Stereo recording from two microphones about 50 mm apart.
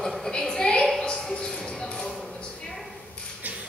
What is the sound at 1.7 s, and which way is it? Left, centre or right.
Music, centre.